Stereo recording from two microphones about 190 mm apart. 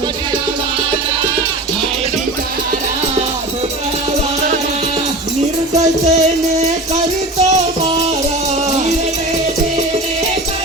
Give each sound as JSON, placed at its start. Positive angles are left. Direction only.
{"t": 5.7, "sound": "music", "side_deg": -35}